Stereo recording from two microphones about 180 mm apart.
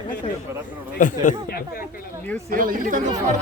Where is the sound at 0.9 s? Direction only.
45° left (ahead or behind).